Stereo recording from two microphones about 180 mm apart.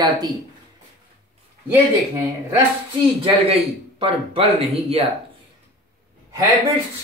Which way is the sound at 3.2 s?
30° right (ahead or behind).